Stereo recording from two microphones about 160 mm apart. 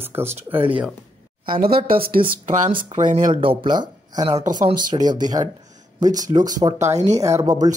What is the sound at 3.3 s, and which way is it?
Speech, 30° right (ahead or behind).